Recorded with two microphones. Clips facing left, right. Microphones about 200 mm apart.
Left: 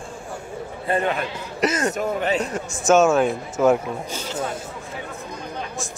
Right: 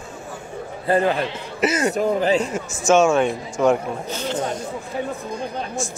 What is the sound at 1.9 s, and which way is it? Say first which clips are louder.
Speech: right 4 dB; 30° right (ahead or behind).